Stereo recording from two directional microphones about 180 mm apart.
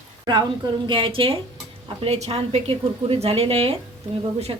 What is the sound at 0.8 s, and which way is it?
A woman's voice, 30° right (ahead or behind).